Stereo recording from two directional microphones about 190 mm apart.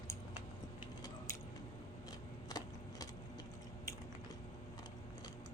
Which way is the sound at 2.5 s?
20° left (ahead or behind).